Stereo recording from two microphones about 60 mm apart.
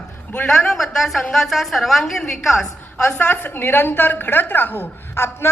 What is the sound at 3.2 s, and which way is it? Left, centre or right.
A woman's voice, left.